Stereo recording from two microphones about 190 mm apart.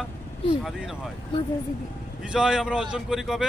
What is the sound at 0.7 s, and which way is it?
Speech, 5° right (ahead or behind).